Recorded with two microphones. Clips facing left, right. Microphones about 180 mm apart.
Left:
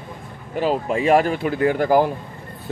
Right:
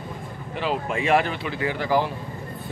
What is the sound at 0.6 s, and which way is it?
Speech, 40° left (ahead or behind).